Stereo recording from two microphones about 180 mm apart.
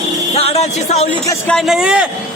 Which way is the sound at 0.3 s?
35° left (ahead or behind).